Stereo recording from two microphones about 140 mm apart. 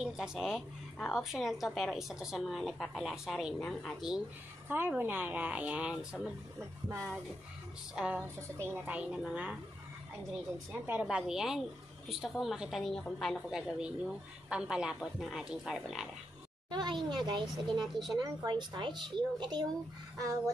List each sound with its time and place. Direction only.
0.0 s a woman's voice: 5° right (ahead or behind)
4.6 s a woman's voice: 15° right (ahead or behind)
6.6 s a sound: 20° right (ahead or behind)
7.9 s a woman's voice: 10° right (ahead or behind)
10.7 s a woman's voice: 10° right (ahead or behind)
16.7 s a woman's voice: 30° right (ahead or behind)